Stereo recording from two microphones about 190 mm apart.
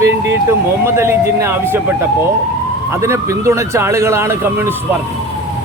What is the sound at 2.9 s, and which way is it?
Speech, 15° right (ahead or behind).